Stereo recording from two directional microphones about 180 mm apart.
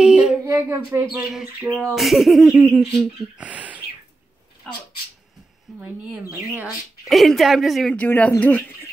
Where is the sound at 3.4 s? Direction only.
5° right (ahead or behind).